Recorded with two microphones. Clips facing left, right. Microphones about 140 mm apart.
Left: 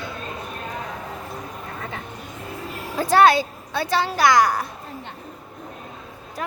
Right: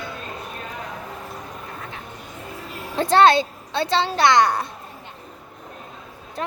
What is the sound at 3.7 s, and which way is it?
Speech, 25° right (ahead or behind).